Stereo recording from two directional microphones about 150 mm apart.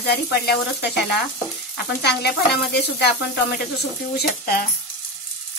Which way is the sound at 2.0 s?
90° left.